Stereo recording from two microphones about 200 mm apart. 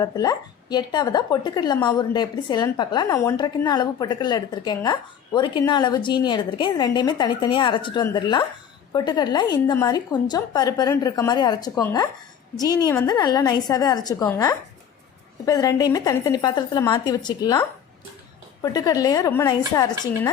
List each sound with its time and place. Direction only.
0.0 s a woman's voice: 20° left (ahead or behind)
18.6 s a woman's voice: 20° left (ahead or behind)